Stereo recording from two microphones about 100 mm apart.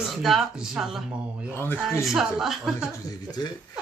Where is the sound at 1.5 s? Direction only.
20° left (ahead or behind).